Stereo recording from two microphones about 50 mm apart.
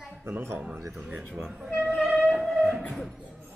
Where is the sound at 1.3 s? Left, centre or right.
Centre.